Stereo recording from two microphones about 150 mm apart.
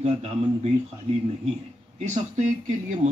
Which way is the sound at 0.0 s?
45° right (ahead or behind).